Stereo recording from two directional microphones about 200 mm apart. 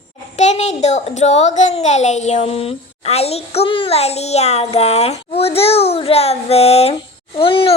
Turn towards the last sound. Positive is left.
turn(degrees=25)  # may be behind; listen again after turning